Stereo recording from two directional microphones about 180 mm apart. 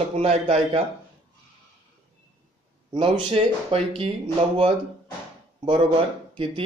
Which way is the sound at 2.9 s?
25° right (ahead or behind).